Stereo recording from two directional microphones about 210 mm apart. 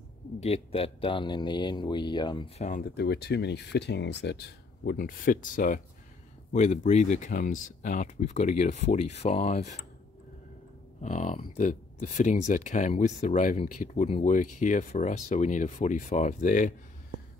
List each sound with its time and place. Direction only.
0.4 s speech: 30° left (ahead or behind)
2.6 s speech: 40° left (ahead or behind)
3.0 s speech: 50° left (ahead or behind)
4.8 s speech: 40° left (ahead or behind)
11.0 s speech: 35° left (ahead or behind)